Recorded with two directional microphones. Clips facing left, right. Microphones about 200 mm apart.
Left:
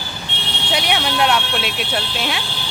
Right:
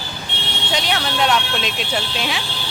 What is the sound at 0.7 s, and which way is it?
A woman's voice, 10° left (ahead or behind).